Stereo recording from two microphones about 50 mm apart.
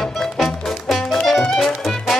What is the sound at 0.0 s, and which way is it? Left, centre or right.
Music, centre.